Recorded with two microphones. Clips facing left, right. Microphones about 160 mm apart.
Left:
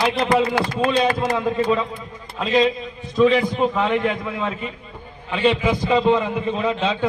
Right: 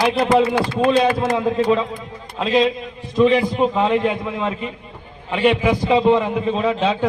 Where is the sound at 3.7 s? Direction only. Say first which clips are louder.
Right 3 dB; 25° right (ahead or behind).